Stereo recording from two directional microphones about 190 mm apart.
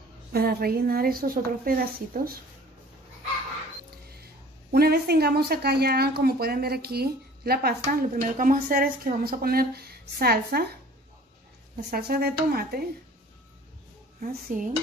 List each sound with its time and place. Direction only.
0.3 s a woman's voice: 55° right (ahead or behind)
4.7 s a woman's voice: 55° right (ahead or behind)
14.2 s a woman's voice: 45° right (ahead or behind)